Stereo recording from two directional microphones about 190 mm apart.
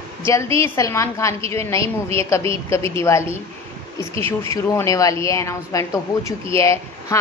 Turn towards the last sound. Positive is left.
turn(degrees=15)  # may be behind; listen again after turning